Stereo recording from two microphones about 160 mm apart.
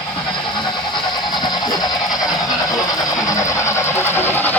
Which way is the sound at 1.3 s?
25° left (ahead or behind).